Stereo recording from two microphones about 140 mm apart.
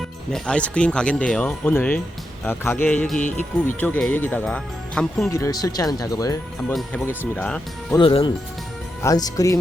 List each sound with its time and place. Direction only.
0.3 s speech: 5° left (ahead or behind)
5.3 s speech: 25° left (ahead or behind)
7.3 s speech: 5° left (ahead or behind)
7.9 s speech: 40° left (ahead or behind)
9.0 s speech: 25° left (ahead or behind)